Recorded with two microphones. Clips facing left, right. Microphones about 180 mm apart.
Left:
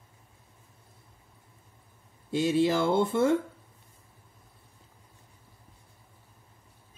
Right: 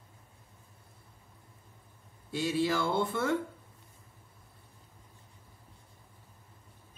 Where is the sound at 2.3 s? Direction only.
20° left (ahead or behind).